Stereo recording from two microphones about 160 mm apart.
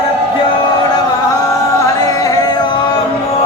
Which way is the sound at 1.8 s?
20° left (ahead or behind).